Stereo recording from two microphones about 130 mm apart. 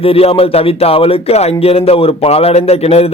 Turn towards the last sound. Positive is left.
turn(degrees=50)  # may be behind; listen again after turning